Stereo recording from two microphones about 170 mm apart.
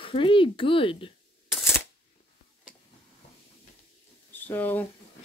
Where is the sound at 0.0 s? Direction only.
30° left (ahead or behind).